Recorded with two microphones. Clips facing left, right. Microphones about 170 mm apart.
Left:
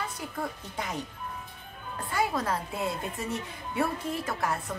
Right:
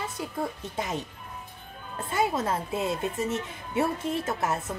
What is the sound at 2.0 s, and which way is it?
Speech, 25° right (ahead or behind).